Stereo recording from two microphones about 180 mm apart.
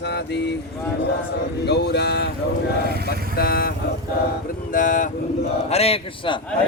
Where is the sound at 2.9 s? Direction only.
60° right (ahead or behind).